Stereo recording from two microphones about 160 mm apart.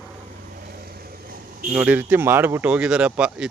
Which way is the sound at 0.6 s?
70° right (ahead or behind).